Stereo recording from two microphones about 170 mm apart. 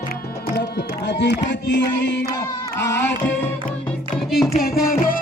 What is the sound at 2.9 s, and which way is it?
Music, 90° left.